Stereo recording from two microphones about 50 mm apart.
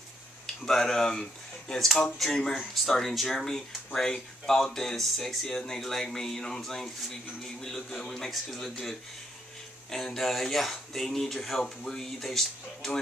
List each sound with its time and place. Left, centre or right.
0.7 s speech: centre